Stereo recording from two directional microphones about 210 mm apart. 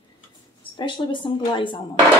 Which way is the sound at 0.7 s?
20° left (ahead or behind).